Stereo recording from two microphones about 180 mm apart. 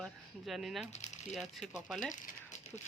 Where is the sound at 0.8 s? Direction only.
40° left (ahead or behind).